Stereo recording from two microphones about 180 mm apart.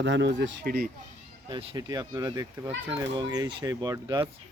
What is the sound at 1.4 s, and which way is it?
Speech, 25° right (ahead or behind).